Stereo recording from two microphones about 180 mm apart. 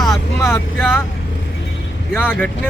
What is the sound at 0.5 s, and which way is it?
Speech, 15° left (ahead or behind).